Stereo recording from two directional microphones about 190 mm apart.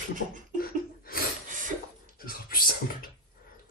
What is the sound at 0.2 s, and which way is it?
Beatboxing, 90° left.